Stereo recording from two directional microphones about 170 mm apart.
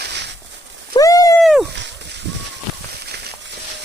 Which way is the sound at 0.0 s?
85° right.